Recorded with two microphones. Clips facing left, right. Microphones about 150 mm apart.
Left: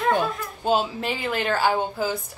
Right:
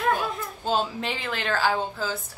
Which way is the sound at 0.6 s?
5° left (ahead or behind).